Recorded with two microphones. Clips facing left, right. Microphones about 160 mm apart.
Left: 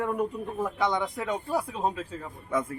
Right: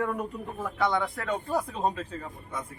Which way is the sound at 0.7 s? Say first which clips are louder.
Right 3 dB; 20° left (ahead or behind).